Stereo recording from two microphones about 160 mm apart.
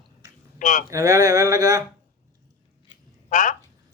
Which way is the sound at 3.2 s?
55° left (ahead or behind).